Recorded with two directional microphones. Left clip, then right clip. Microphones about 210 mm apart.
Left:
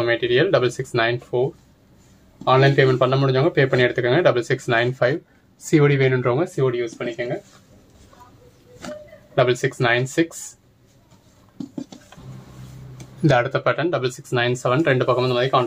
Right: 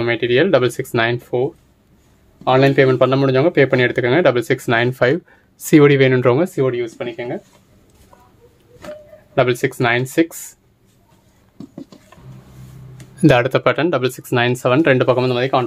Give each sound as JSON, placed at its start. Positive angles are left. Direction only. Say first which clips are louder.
{"t": 0.0, "sound": "speech", "louder": "right 3 dB", "side_deg": -50}
{"t": 2.4, "sound": "speech", "louder": "right 3 dB", "side_deg": -45}
{"t": 9.3, "sound": "speech", "louder": "right 2 dB", "side_deg": -45}
{"t": 13.2, "sound": "speech", "louder": "right 5 dB", "side_deg": -45}